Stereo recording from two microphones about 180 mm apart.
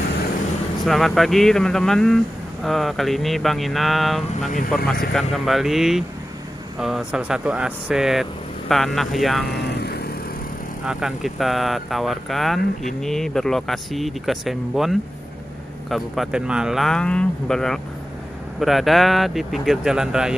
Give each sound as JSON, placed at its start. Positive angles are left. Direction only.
{"t": 0.8, "sound": "speech", "side_deg": 0}
{"t": 9.5, "sound": "vehicle", "side_deg": 65}
{"t": 10.9, "sound": "speech", "side_deg": -5}